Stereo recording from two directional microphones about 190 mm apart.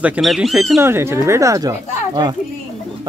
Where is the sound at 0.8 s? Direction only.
15° right (ahead or behind).